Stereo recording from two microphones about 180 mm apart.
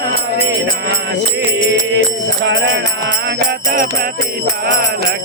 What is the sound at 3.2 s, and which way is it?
Music, 55° right (ahead or behind).